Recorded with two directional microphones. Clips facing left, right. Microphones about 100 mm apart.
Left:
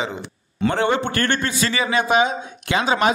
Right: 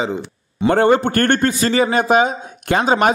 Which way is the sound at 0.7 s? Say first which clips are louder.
Right 7 dB; 45° right (ahead or behind).